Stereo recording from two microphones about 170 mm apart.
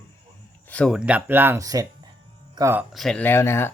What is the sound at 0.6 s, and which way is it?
Speech, 5° left (ahead or behind).